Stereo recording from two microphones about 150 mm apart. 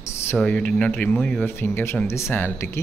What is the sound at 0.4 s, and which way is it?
Speech, 5° left (ahead or behind).